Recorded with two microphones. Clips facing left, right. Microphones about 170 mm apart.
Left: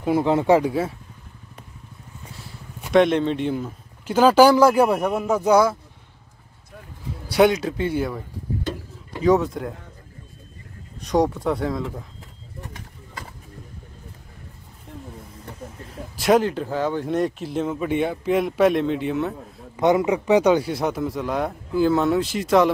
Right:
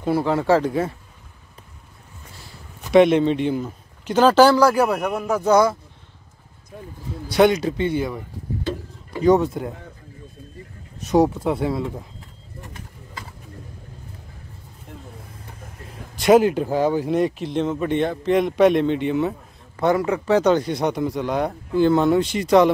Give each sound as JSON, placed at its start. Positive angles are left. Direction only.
{"t": 0.0, "sound": "speech", "side_deg": 20}
{"t": 2.9, "sound": "speech", "side_deg": -5}
{"t": 4.6, "sound": "speech", "side_deg": 25}
{"t": 7.2, "sound": "speech", "side_deg": 5}
{"t": 9.2, "sound": "speech", "side_deg": 0}
{"t": 11.0, "sound": "speech", "side_deg": -5}
{"t": 16.2, "sound": "speech", "side_deg": -5}
{"t": 17.0, "sound": "speech", "side_deg": 0}
{"t": 19.8, "sound": "speech", "side_deg": 20}